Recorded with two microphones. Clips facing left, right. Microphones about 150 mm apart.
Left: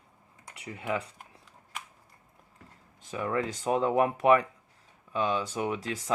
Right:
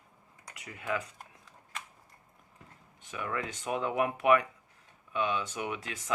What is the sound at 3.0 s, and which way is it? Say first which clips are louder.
Speech: left 6 dB; 35° left (ahead or behind).